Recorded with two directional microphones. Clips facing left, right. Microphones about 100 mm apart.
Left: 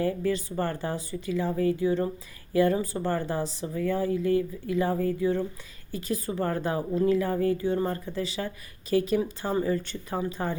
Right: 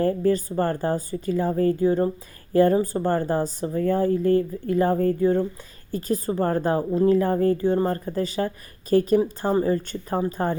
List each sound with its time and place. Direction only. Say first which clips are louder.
0.0 s a woman's voice: right 6 dB; 40° right (ahead or behind)